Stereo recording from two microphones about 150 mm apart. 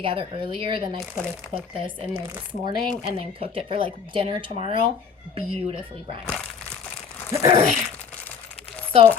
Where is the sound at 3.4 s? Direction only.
35° right (ahead or behind).